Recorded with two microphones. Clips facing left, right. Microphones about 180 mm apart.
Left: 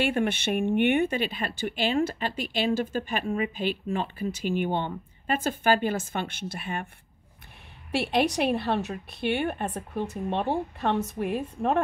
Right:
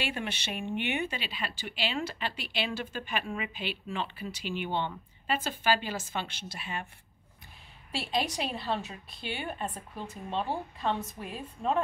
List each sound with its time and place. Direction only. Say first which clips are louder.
0.0 s speech: left 9 dB; 50° left (ahead or behind)
7.9 s a woman's voice: left 7 dB; 65° left (ahead or behind)